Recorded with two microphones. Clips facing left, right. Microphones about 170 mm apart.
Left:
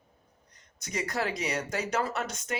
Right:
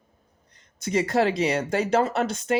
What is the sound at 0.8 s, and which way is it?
Speech, 30° right (ahead or behind).